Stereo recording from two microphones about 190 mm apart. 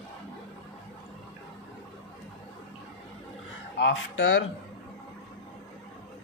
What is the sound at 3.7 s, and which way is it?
Speech, 80° left.